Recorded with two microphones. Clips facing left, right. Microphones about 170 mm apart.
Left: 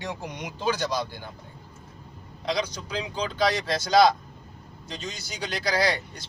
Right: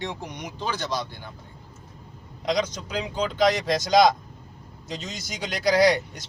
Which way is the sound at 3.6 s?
15° right (ahead or behind).